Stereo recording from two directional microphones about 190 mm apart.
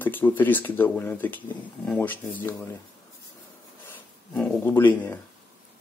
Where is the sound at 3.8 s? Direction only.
10° left (ahead or behind).